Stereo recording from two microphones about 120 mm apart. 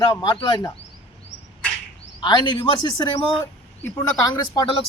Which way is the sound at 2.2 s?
40° left (ahead or behind).